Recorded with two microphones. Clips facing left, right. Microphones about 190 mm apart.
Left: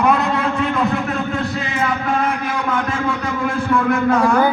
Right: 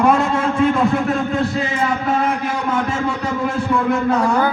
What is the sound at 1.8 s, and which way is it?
A man's voice, 40° right (ahead or behind).